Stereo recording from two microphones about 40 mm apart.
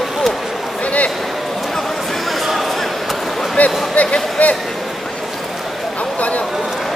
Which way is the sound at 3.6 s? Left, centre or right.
Left.